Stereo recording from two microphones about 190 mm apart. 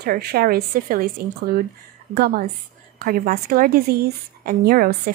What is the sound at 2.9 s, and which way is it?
A woman's voice, 50° right (ahead or behind).